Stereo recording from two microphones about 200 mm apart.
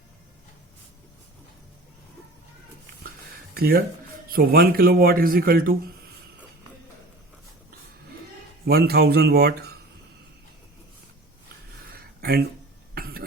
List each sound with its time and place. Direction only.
3.5 s speech: 50° right (ahead or behind)
8.6 s speech: 55° right (ahead or behind)
11.9 s a sound: 50° right (ahead or behind)
12.9 s cough: 50° right (ahead or behind)